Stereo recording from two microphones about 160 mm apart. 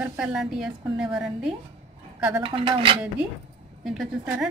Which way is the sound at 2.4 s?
35° right (ahead or behind).